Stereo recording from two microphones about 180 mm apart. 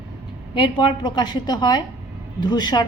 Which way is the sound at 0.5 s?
25° left (ahead or behind).